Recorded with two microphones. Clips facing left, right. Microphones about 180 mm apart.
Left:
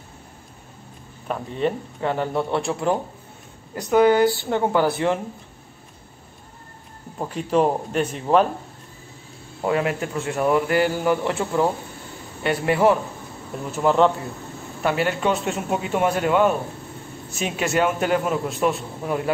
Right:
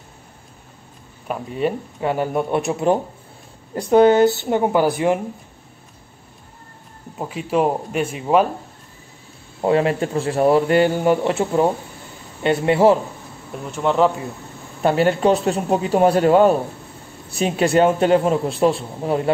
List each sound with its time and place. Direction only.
1.2 s speech: 10° right (ahead or behind)
7.2 s speech: 5° right (ahead or behind)
9.6 s speech: 30° right (ahead or behind)
13.7 s speech: centre (ahead or behind)
14.8 s a man's voice: 30° right (ahead or behind)